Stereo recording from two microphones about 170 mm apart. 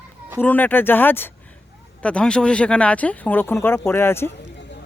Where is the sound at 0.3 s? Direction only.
10° left (ahead or behind).